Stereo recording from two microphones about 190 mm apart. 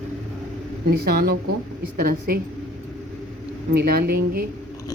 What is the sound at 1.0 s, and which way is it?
A woman's voice, 55° right (ahead or behind).